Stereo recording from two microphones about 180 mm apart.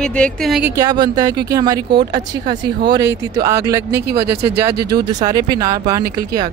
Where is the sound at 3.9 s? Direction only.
65° right (ahead or behind).